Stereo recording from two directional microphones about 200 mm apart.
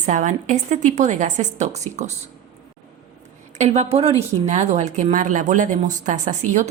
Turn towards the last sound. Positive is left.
turn(degrees=-35)  # may be behind; listen again after turning